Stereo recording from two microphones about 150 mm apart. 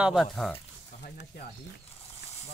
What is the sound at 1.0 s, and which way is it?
Speech, 75° left (ahead or behind).